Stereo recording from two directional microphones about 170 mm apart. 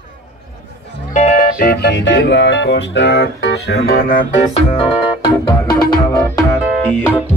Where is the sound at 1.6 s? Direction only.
70° left (ahead or behind).